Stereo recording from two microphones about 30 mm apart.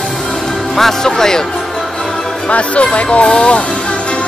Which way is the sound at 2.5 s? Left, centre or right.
Left.